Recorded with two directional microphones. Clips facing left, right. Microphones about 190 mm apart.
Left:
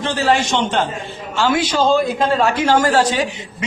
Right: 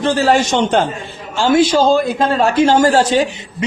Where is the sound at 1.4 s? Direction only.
30° right (ahead or behind).